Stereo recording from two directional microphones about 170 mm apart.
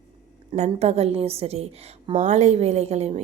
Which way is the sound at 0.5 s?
40° right (ahead or behind).